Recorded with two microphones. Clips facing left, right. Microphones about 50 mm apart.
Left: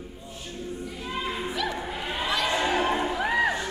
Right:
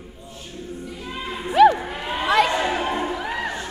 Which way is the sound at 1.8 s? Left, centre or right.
Right.